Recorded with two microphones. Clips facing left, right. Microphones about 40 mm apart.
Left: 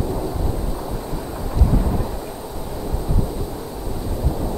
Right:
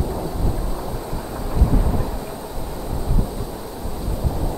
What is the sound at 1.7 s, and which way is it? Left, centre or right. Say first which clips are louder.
Thunder: left 1 dB; centre.